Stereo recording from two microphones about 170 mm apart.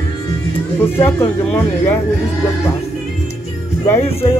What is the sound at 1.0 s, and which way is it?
Speech, 10° left (ahead or behind).